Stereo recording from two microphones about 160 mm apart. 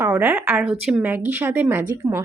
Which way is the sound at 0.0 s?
10° right (ahead or behind).